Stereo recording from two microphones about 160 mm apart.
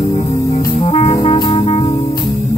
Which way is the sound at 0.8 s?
40° left (ahead or behind).